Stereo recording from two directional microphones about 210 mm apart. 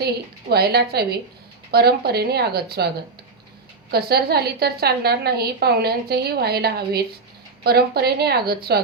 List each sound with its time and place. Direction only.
0.5 s a woman's voice: 50° right (ahead or behind)
3.9 s a woman's voice: 50° right (ahead or behind)